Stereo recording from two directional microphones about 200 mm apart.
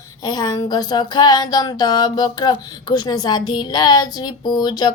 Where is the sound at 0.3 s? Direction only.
20° left (ahead or behind).